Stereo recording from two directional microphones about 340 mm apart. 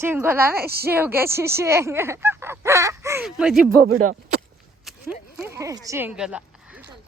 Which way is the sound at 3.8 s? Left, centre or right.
Right.